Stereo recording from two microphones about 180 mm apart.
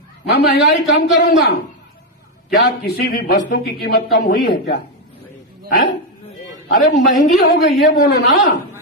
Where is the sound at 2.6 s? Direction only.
55° left (ahead or behind).